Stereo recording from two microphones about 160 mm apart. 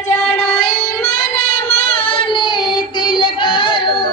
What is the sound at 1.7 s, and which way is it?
Child singing, 40° left (ahead or behind).